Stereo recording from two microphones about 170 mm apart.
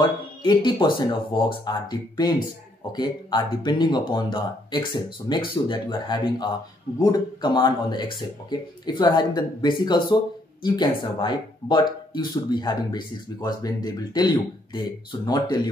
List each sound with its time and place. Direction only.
0.4 s speech: 30° left (ahead or behind)